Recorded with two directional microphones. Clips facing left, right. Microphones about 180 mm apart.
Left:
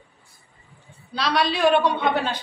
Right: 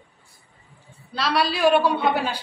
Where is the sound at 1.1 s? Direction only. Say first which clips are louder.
Even; 5° right (ahead or behind).